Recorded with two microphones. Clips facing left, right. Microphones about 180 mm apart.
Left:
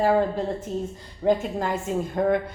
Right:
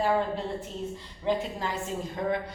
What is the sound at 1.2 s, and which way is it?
A woman's voice, 50° left (ahead or behind).